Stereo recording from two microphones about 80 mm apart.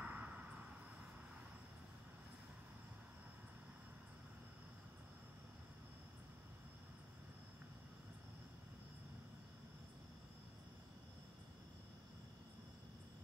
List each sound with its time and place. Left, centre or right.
0.0 s vehicle: centre